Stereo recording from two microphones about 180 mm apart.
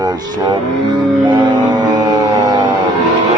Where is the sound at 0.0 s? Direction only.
20° right (ahead or behind).